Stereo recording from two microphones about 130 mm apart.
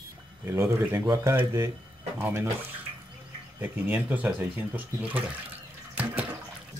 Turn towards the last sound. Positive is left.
turn(degrees=-10)  # may be behind; listen again after turning